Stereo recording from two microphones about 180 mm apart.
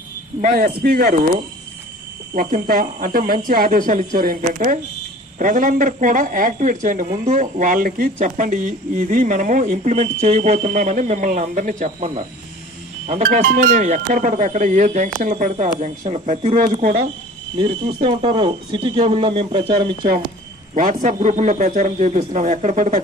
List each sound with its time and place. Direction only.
0.4 s speech: 55° right (ahead or behind)
2.3 s a woman's voice: 50° right (ahead or behind)
17.6 s speech: 25° right (ahead or behind)
20.7 s a woman's voice: 50° right (ahead or behind)